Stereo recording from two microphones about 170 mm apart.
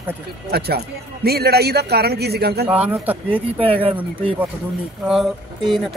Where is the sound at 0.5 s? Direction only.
70° right (ahead or behind).